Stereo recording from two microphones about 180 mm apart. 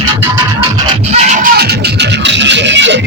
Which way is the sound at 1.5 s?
65° right (ahead or behind).